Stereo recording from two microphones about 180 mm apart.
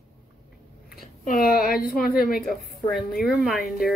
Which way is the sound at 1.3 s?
55° left (ahead or behind).